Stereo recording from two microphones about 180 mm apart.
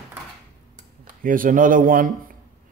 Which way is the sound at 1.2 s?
50° right (ahead or behind).